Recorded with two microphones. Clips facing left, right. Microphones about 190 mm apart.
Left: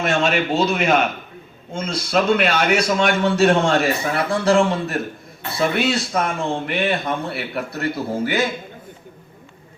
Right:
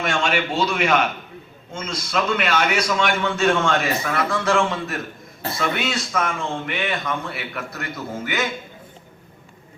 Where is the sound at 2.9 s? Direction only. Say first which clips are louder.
Left 4 dB; 40° left (ahead or behind).